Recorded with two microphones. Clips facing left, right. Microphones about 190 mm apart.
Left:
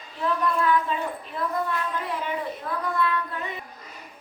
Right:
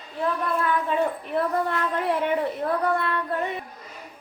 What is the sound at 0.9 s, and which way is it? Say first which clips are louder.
A woman's voice: right 6 dB; 60° right (ahead or behind).